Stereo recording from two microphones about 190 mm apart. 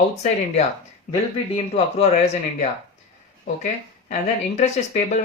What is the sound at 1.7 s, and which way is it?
Speech, 35° left (ahead or behind).